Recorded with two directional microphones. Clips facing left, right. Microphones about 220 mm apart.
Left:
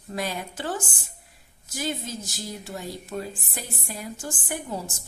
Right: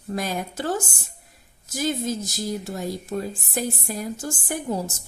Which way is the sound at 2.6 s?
40° right (ahead or behind).